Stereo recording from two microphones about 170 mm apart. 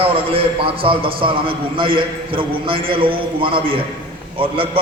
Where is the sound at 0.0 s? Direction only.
35° right (ahead or behind).